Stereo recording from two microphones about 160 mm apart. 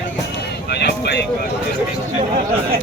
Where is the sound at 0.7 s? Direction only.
90° left.